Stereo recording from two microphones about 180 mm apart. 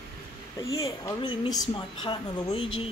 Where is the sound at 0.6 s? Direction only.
20° left (ahead or behind).